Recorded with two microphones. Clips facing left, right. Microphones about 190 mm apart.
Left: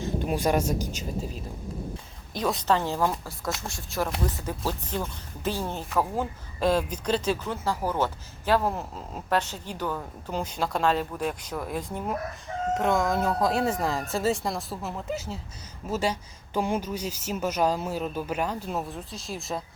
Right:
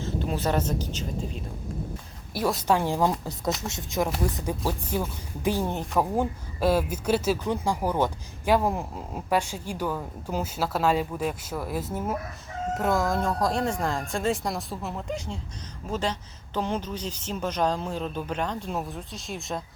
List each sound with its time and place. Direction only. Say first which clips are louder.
0.0 s speech: left 2 dB; 15° left (ahead or behind)
2.3 s speech: right 1 dB; 10° right (ahead or behind)